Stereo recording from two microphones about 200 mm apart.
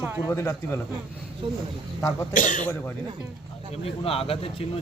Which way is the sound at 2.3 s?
40° left (ahead or behind).